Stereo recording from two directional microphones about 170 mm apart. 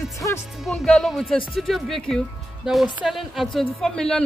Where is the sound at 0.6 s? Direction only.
5° left (ahead or behind).